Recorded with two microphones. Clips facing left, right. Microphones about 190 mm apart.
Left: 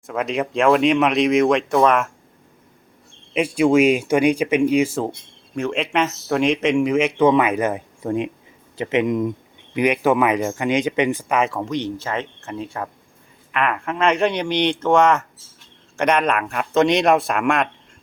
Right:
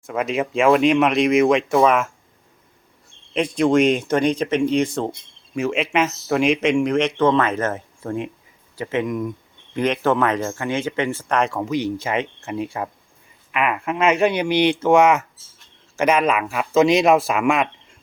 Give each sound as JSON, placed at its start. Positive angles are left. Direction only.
{"t": 0.1, "sound": "speech", "side_deg": -5}
{"t": 3.3, "sound": "speech", "side_deg": 10}
{"t": 9.7, "sound": "speech", "side_deg": 10}